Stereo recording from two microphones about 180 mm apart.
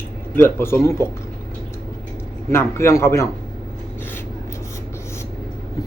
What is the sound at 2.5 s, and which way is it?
Speech, 15° left (ahead or behind).